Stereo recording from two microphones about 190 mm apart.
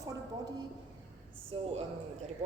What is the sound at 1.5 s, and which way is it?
Speech, 30° right (ahead or behind).